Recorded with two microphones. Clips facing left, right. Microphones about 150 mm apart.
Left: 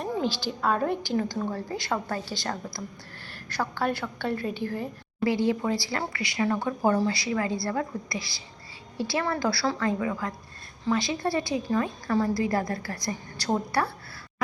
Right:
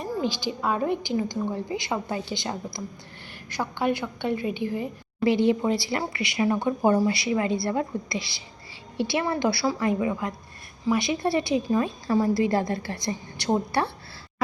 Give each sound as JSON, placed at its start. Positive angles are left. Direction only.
{"t": 0.3, "sound": "a woman's voice", "side_deg": -15}